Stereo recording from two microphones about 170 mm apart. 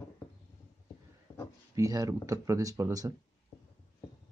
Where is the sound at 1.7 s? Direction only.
20° right (ahead or behind).